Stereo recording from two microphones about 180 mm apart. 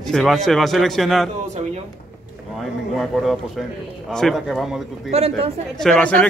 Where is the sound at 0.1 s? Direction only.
Centre (ahead or behind).